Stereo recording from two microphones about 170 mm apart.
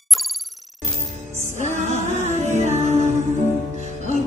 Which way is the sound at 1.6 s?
45° right (ahead or behind).